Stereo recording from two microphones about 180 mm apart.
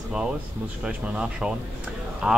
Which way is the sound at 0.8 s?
5° right (ahead or behind).